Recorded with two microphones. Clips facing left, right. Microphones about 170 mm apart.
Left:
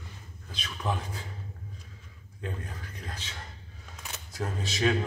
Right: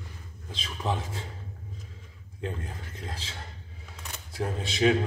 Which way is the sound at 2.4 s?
25° right (ahead or behind).